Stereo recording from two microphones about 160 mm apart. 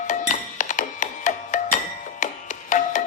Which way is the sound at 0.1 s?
50° left (ahead or behind).